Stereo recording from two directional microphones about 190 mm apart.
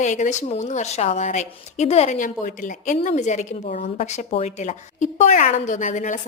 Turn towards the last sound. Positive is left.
turn(degrees=40)  # may be behind; listen again after turning